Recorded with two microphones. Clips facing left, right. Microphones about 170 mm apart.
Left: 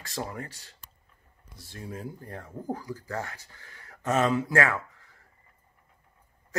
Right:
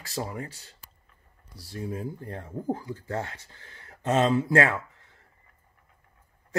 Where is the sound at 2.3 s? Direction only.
30° right (ahead or behind).